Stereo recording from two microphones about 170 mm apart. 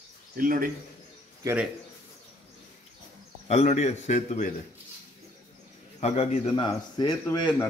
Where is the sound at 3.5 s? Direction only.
40° left (ahead or behind).